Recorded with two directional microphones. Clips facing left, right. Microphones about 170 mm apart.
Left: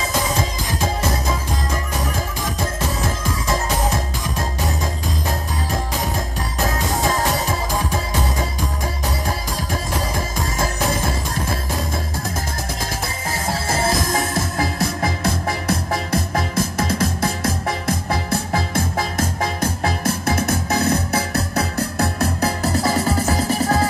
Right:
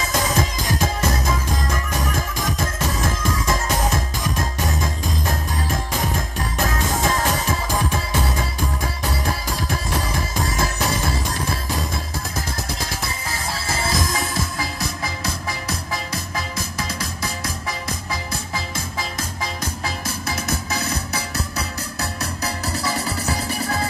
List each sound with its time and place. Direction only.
13.5 s music: 50° left (ahead or behind)